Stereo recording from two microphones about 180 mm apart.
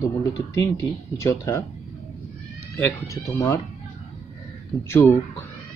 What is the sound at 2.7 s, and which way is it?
Speech, 15° left (ahead or behind).